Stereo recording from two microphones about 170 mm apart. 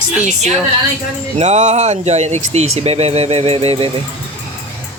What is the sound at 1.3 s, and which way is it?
Speech, 45° right (ahead or behind).